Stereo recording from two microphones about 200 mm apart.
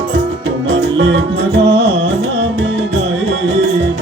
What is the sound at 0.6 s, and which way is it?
Music, 65° right (ahead or behind).